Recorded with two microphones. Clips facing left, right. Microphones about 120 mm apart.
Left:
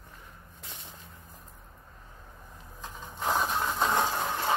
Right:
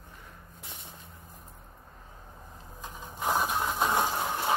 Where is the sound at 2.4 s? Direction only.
25° right (ahead or behind).